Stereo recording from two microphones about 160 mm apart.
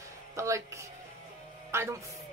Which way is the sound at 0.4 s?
20° right (ahead or behind).